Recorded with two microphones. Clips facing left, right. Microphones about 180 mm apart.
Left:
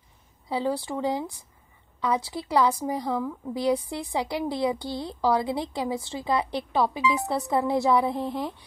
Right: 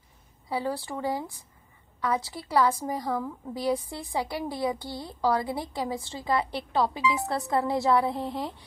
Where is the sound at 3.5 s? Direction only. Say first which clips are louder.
Left 3 dB; 15° left (ahead or behind).